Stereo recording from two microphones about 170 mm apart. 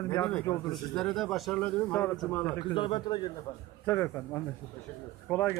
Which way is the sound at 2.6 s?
30° left (ahead or behind).